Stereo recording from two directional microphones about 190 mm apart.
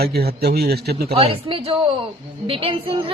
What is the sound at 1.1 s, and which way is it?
A woman's voice, 30° right (ahead or behind).